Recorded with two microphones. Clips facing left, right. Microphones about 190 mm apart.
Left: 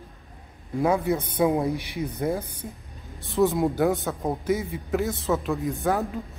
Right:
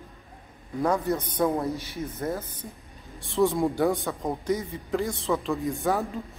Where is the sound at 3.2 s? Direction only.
Centre (ahead or behind).